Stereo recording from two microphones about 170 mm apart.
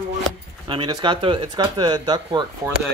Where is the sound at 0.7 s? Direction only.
25° right (ahead or behind).